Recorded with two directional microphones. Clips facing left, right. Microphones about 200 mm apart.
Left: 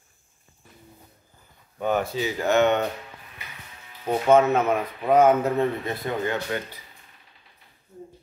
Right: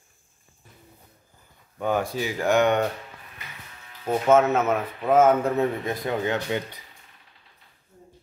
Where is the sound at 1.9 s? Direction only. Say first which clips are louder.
Left 1 dB; 10° right (ahead or behind).